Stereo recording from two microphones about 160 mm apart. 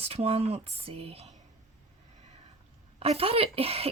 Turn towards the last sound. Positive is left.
turn(degrees=-40)  # may be behind; listen again after turning